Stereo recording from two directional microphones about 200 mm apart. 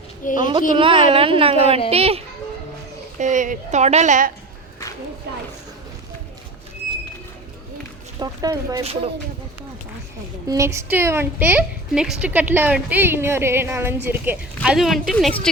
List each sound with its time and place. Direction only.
0.3 s a woman's voice: 20° right (ahead or behind); by 4.3 s 35° right (ahead or behind)
8.2 s a woman's voice: 20° right (ahead or behind)
8.8 s a woman's voice: 30° right (ahead or behind)
10.5 s a woman's voice: 15° right (ahead or behind)
14.6 s speech: centre (ahead or behind)